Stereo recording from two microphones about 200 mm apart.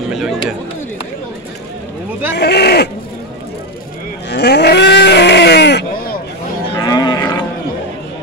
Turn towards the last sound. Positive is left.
turn(degrees=20)  # may be behind; listen again after turning